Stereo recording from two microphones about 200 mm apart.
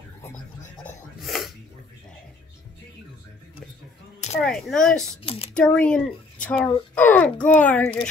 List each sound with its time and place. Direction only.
1.2 s sneeze: centre (ahead or behind)
4.4 s speech: centre (ahead or behind)
5.2 s a sound: 30° left (ahead or behind)
5.5 s a child's voice: 5° left (ahead or behind)